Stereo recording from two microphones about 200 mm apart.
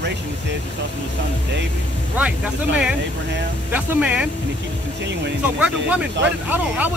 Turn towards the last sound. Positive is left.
turn(degrees=-10)  # may be behind; listen again after turning